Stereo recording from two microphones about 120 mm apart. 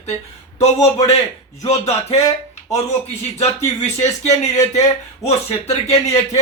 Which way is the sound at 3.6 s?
70° left (ahead or behind).